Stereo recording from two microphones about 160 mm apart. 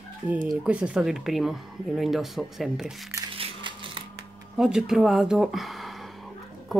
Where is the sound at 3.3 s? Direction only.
35° right (ahead or behind).